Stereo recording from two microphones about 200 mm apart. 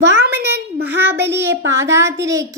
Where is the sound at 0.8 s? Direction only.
10° right (ahead or behind).